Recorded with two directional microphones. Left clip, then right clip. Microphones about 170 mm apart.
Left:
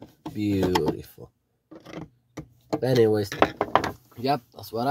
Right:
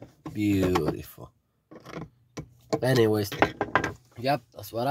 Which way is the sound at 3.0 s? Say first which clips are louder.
Left 3 dB; 25° right (ahead or behind).